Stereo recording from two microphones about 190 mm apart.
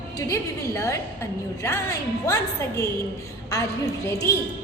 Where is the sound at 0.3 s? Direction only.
15° left (ahead or behind).